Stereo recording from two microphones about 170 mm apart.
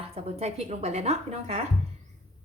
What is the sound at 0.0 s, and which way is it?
Speech, 35° right (ahead or behind).